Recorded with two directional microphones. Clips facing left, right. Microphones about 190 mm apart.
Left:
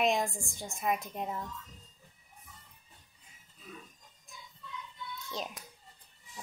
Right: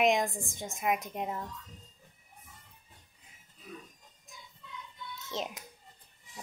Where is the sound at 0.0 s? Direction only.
20° right (ahead or behind).